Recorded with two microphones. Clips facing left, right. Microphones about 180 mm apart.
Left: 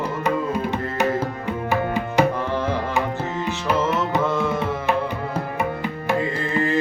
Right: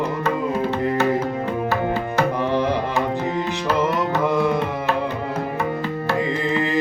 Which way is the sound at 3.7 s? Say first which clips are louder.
Right 1 dB; 15° right (ahead or behind).